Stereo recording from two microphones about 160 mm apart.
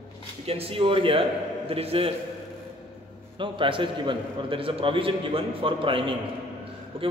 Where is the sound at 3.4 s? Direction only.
30° right (ahead or behind).